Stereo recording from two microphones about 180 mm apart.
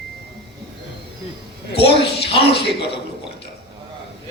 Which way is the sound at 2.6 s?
70° left (ahead or behind).